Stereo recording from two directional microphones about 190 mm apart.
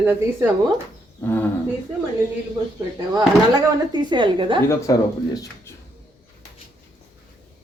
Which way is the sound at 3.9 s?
25° right (ahead or behind).